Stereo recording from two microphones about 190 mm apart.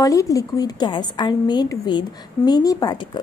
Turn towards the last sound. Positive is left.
turn(degrees=20)  # may be behind; listen again after turning